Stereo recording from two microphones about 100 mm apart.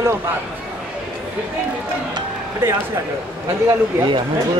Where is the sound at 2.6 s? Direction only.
20° right (ahead or behind).